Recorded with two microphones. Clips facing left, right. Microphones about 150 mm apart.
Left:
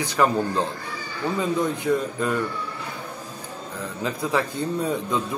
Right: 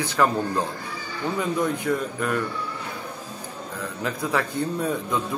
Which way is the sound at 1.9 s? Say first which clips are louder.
Left 5 dB; 10° left (ahead or behind).